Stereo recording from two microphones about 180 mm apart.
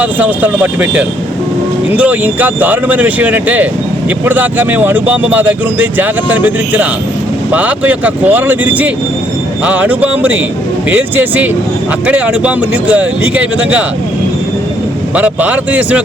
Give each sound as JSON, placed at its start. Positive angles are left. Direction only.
{"t": 0.0, "sound": "speech", "side_deg": -10}
{"t": 15.1, "sound": "speech", "side_deg": -10}